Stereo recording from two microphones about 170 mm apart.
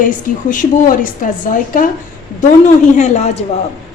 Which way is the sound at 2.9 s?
40° left (ahead or behind).